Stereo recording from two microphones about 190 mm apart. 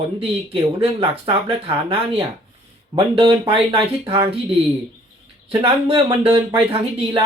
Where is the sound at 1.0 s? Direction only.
25° right (ahead or behind).